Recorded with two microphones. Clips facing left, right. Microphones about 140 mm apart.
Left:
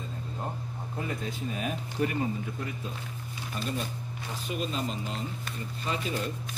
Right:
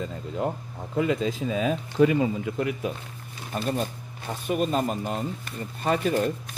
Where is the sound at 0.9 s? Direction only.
90° right.